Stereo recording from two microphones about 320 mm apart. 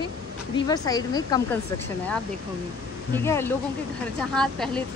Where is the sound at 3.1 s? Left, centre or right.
Centre.